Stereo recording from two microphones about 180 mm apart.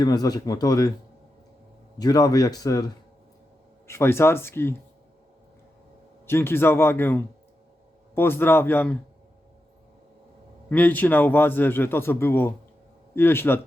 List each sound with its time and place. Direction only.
0.0 s speech: 20° left (ahead or behind)
2.0 s a man's voice: 20° left (ahead or behind)
6.2 s a man's voice: 15° left (ahead or behind)
10.7 s a man's voice: 10° left (ahead or behind)